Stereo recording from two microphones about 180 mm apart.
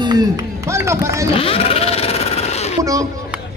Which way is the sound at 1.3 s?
30° left (ahead or behind).